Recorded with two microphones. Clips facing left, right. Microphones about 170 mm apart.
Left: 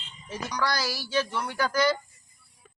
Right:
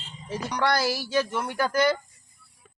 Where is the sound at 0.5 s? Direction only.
55° right (ahead or behind).